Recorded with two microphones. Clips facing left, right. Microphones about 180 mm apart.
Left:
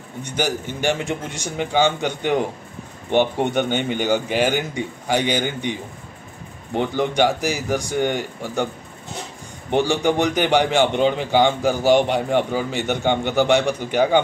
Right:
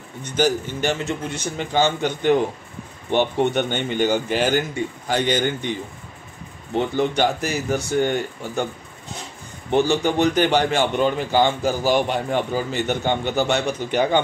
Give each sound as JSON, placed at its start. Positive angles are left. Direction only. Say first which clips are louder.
{"t": 0.2, "sound": "speech", "louder": "right 3 dB", "side_deg": 10}
{"t": 7.0, "sound": "speech", "louder": "left 2 dB", "side_deg": 15}
{"t": 9.7, "sound": "speech", "louder": "even", "side_deg": 15}